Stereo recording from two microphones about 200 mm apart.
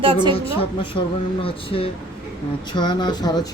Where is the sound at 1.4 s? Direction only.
25° left (ahead or behind).